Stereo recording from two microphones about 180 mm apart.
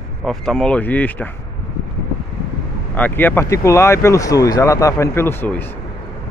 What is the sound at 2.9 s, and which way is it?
Speech, 10° left (ahead or behind).